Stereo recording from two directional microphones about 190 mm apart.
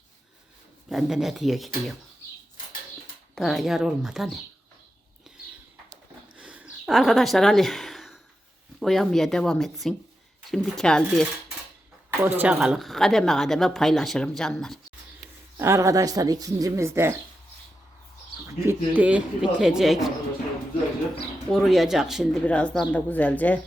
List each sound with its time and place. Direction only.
0.9 s speech: centre (ahead or behind)
3.3 s speech: centre (ahead or behind)
6.3 s a sound: 5° right (ahead or behind)
8.8 s speech: centre (ahead or behind)
12.2 s speech: 10° right (ahead or behind)
15.5 s speech: 15° right (ahead or behind)
18.4 s speech: 15° right (ahead or behind)
21.5 s speech: centre (ahead or behind)